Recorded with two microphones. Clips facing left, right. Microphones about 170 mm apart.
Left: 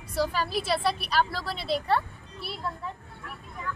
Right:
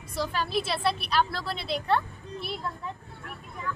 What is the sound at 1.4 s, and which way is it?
Speech, 40° left (ahead or behind).